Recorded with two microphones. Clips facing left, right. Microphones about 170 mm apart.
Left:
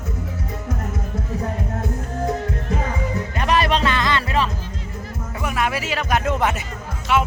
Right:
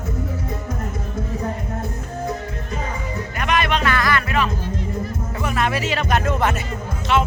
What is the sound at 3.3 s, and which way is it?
Music, 35° left (ahead or behind).